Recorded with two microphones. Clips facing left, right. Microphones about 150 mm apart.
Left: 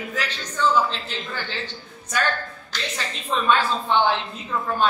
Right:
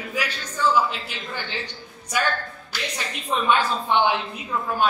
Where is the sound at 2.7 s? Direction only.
15° right (ahead or behind).